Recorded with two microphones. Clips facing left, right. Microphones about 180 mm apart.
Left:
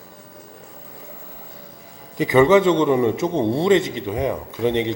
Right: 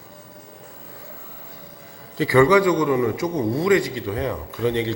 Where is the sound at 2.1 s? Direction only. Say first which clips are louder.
Left 1 dB; 20° left (ahead or behind).